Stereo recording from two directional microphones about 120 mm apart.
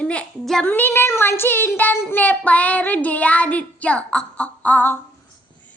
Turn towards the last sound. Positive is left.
turn(degrees=15)  # may be behind; listen again after turning